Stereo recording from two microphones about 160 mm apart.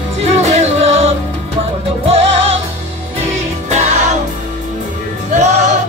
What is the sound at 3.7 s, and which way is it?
Music, 45° right (ahead or behind).